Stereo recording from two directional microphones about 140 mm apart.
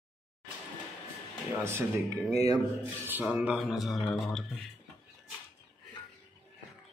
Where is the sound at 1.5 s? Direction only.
15° right (ahead or behind); by 4.5 s centre (ahead or behind).